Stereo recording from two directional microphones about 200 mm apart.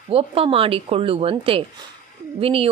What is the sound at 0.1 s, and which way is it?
A woman's voice, 30° right (ahead or behind).